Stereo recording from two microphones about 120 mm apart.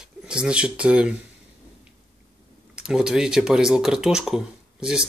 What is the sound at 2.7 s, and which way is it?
Speech, 5° right (ahead or behind).